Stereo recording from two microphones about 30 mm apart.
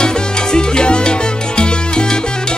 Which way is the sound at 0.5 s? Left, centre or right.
Left.